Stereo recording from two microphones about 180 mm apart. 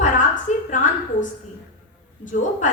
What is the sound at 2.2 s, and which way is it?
Speech, 45° left (ahead or behind).